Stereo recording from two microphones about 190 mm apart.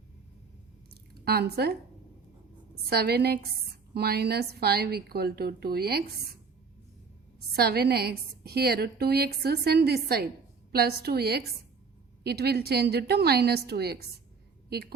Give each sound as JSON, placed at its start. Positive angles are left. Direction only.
{"t": 1.2, "sound": "a woman's voice", "side_deg": -55}
{"t": 2.9, "sound": "a woman's voice", "side_deg": -60}
{"t": 7.5, "sound": "a woman's voice", "side_deg": -55}